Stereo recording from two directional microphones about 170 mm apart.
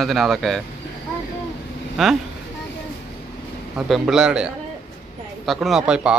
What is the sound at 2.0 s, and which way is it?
Speech, centre (ahead or behind).